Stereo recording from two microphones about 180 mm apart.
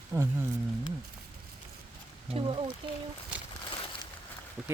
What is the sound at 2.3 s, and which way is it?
Speech, 30° right (ahead or behind).